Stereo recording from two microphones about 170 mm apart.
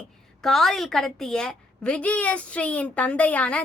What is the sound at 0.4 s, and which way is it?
A woman's voice, centre (ahead or behind).